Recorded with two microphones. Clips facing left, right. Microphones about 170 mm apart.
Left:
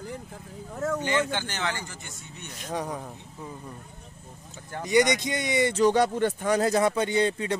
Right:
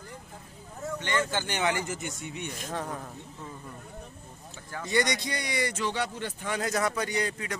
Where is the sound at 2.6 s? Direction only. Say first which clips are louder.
Left 5 dB; 15° left (ahead or behind).